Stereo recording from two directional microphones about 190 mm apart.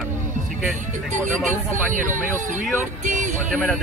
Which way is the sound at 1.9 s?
40° right (ahead or behind).